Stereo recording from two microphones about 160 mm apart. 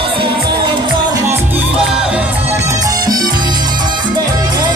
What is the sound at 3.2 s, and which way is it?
Salsa music, 25° right (ahead or behind).